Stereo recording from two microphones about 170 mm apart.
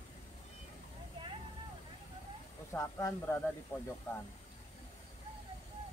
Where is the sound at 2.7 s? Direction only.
15° left (ahead or behind).